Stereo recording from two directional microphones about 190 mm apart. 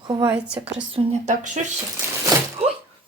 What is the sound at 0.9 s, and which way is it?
Speech, 40° right (ahead or behind).